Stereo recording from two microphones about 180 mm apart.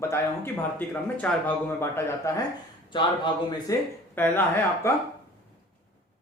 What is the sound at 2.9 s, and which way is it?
Speech, 25° left (ahead or behind).